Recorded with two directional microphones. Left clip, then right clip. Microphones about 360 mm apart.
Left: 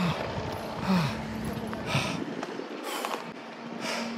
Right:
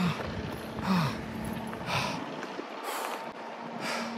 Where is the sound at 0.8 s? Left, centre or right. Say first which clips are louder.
Even; centre.